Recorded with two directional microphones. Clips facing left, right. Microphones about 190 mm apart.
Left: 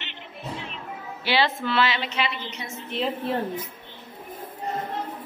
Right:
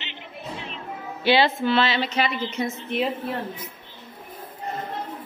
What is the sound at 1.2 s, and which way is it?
A woman's voice, 20° right (ahead or behind).